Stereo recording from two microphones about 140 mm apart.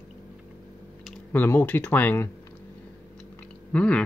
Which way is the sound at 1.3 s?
15° left (ahead or behind).